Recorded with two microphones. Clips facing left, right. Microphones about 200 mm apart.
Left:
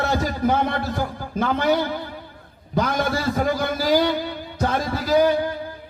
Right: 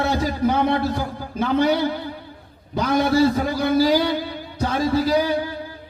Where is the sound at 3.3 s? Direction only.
50° left (ahead or behind).